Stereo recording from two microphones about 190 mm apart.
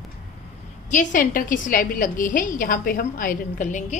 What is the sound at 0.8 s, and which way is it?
A woman's voice, 45° left (ahead or behind).